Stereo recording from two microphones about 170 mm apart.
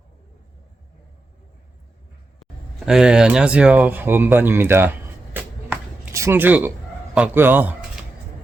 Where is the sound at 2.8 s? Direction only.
5° right (ahead or behind).